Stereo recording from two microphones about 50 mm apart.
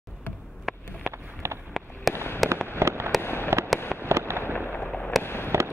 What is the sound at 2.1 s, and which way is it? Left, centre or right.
Fireworks, left.